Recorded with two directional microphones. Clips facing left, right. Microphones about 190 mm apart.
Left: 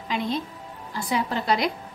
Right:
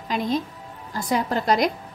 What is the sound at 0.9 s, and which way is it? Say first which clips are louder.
Speech: right 3 dB; 45° right (ahead or behind).